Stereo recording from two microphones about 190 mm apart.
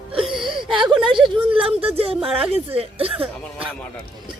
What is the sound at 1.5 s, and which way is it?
Speech, 30° right (ahead or behind).